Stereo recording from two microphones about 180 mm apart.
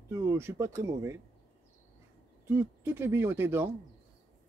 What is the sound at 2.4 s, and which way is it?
Speech, 15° right (ahead or behind).